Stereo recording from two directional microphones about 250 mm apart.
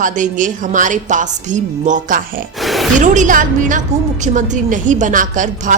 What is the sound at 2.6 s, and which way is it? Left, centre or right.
Speech, centre.